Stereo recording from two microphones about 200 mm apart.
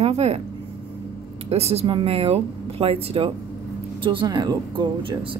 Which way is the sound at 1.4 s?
30° right (ahead or behind).